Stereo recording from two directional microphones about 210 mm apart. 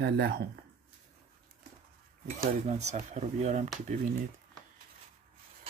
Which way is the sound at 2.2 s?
30° right (ahead or behind).